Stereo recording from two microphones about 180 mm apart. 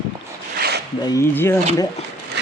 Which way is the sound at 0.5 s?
60° right (ahead or behind).